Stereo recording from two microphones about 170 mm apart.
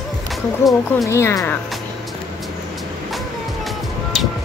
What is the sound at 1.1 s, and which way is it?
Speech, 15° left (ahead or behind).